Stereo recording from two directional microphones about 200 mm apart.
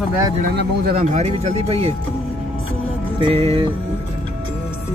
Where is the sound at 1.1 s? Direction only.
35° right (ahead or behind).